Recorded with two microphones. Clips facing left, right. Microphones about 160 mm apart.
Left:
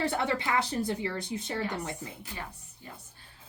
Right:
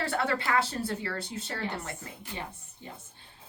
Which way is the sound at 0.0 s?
20° left (ahead or behind).